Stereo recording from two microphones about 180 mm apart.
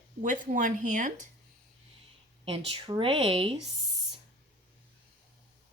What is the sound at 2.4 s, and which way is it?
Speech, 30° right (ahead or behind).